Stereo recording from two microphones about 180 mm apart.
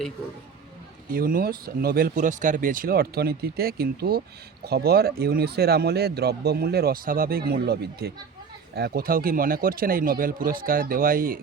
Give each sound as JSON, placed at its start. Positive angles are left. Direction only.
{"t": 1.1, "sound": "speech", "side_deg": -55}